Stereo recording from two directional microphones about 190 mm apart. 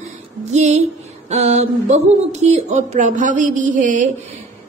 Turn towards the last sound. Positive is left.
turn(degrees=-40)  # may be behind; listen again after turning